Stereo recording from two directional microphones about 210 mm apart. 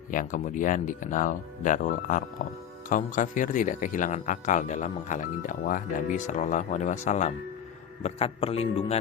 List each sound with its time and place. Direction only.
0.1 s a man's voice: 40° left (ahead or behind)